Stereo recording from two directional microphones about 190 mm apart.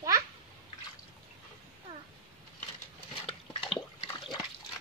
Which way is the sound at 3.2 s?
25° left (ahead or behind).